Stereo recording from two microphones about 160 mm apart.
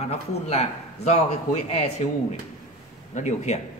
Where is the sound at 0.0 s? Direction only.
40° left (ahead or behind).